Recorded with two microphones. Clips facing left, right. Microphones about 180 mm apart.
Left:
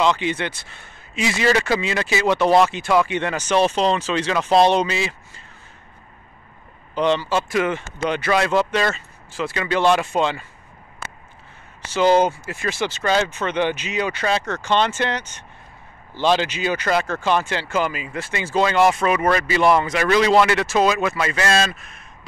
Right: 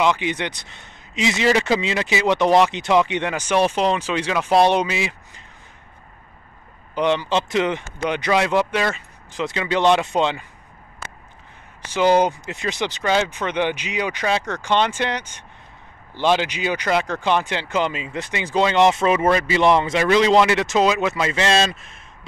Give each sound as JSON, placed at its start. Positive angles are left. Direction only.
{"t": 0.0, "sound": "speech", "side_deg": -15}
{"t": 7.0, "sound": "speech", "side_deg": -15}
{"t": 11.8, "sound": "speech", "side_deg": -15}